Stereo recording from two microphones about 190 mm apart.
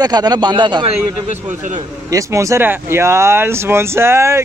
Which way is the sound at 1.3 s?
40° right (ahead or behind).